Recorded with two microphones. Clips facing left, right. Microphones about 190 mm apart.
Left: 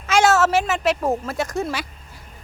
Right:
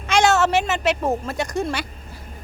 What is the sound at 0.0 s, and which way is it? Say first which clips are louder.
Speech: left 1 dB; 5° left (ahead or behind).